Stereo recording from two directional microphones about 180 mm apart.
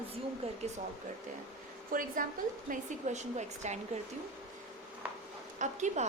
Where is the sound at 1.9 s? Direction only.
50° right (ahead or behind).